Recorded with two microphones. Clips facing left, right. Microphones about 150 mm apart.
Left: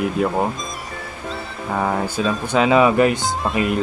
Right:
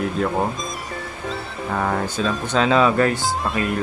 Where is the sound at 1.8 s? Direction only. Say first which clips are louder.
Left 2 dB; 10° left (ahead or behind).